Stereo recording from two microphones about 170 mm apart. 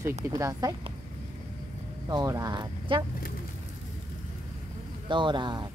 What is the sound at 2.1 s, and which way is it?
Speech, 20° right (ahead or behind).